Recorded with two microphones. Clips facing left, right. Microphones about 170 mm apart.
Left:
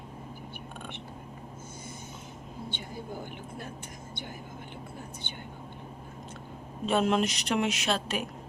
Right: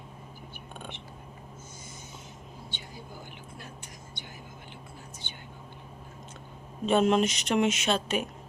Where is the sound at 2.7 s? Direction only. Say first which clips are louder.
Left 7 dB; 55° left (ahead or behind).